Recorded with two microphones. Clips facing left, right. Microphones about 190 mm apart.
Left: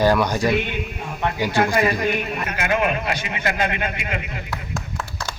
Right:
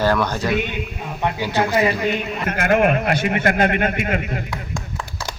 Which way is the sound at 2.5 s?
55° right (ahead or behind).